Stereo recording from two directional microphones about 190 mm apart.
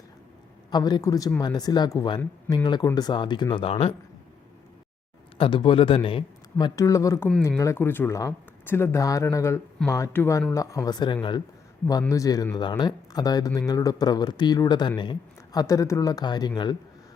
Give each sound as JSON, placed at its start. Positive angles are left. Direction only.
{"t": 0.7, "sound": "speech", "side_deg": 20}
{"t": 5.4, "sound": "speech", "side_deg": 25}